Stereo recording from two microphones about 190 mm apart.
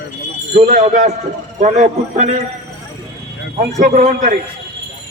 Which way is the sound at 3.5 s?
40° right (ahead or behind).